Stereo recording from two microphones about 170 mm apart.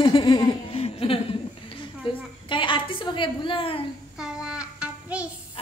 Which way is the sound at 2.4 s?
30° left (ahead or behind).